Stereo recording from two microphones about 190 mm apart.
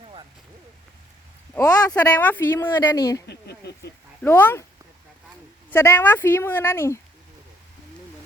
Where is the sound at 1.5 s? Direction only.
20° left (ahead or behind).